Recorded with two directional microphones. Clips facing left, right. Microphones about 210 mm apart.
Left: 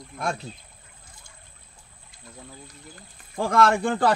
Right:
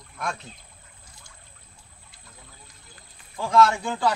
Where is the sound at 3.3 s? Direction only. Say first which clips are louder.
Even; 55° left (ahead or behind).